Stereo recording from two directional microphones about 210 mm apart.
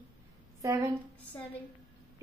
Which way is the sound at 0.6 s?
15° right (ahead or behind).